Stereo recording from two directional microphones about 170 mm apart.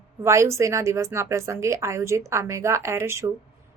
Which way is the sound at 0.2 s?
15° right (ahead or behind).